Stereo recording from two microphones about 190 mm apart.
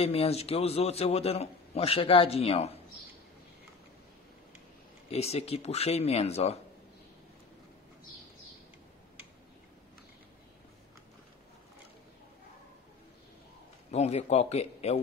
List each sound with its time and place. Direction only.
0.0 s a man's voice: 30° left (ahead or behind)
5.1 s a man's voice: 30° left (ahead or behind)
13.9 s a man's voice: 35° left (ahead or behind)